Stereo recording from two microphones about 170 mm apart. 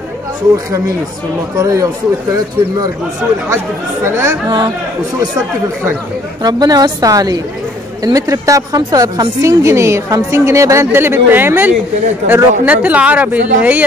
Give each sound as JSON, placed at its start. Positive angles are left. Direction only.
{"t": 1.6, "sound": "a woman's voice", "side_deg": -20}
{"t": 3.4, "sound": "a woman's voice", "side_deg": -15}
{"t": 6.4, "sound": "a woman's voice", "side_deg": -20}